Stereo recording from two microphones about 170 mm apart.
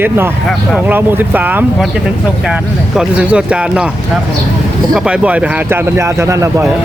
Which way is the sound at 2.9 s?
5° right (ahead or behind).